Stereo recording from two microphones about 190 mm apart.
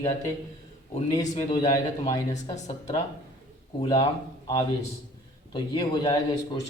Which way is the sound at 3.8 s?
25° left (ahead or behind).